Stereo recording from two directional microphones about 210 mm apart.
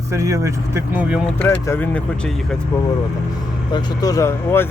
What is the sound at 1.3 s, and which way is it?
Speech, 10° left (ahead or behind).